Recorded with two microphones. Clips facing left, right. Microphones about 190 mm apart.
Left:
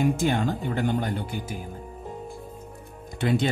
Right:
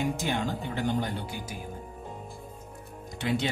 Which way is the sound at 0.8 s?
55° left (ahead or behind).